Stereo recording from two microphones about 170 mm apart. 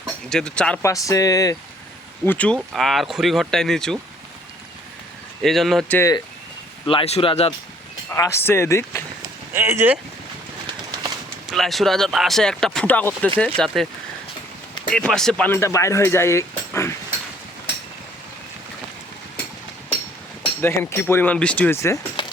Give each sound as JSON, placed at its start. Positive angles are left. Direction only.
{"t": 0.0, "sound": "speech", "side_deg": 5}
{"t": 0.8, "sound": "speech", "side_deg": 20}
{"t": 2.2, "sound": "speech", "side_deg": 10}
{"t": 5.4, "sound": "speech", "side_deg": 0}
{"t": 6.0, "sound": "speech", "side_deg": 20}
{"t": 6.8, "sound": "speech", "side_deg": 35}
{"t": 8.1, "sound": "speech", "side_deg": 15}
{"t": 9.5, "sound": "speech", "side_deg": -15}
{"t": 11.4, "sound": "speech", "side_deg": 0}
{"t": 14.8, "sound": "speech", "side_deg": 5}
{"t": 20.6, "sound": "speech", "side_deg": 15}